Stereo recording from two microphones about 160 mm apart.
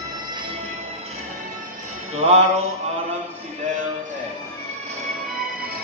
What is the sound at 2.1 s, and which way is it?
Music, 40° right (ahead or behind).